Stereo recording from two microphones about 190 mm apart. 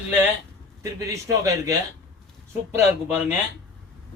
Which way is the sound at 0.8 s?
15° right (ahead or behind).